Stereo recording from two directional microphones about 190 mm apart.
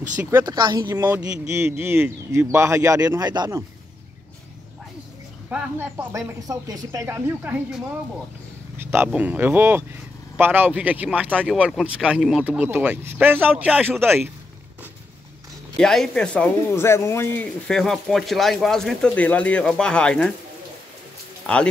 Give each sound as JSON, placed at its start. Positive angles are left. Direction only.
{"t": 0.2, "sound": "speech", "side_deg": -15}
{"t": 0.9, "sound": "a man's voice", "side_deg": -10}
{"t": 5.5, "sound": "a man's voice", "side_deg": -10}
{"t": 15.8, "sound": "speech", "side_deg": 0}
{"t": 21.5, "sound": "speech", "side_deg": 5}